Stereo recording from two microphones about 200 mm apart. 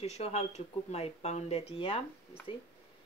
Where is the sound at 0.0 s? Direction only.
30° left (ahead or behind).